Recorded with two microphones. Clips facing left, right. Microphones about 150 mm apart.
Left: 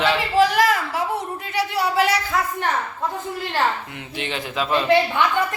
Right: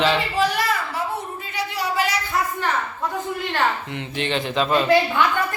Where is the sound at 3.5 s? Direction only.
5° left (ahead or behind).